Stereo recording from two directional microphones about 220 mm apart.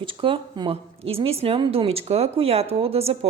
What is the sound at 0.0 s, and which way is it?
Speech, 25° right (ahead or behind).